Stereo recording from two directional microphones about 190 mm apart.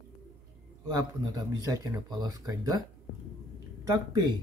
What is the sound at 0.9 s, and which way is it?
Speech, 20° right (ahead or behind).